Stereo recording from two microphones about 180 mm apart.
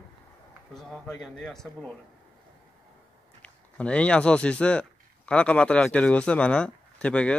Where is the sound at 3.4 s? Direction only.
5° left (ahead or behind).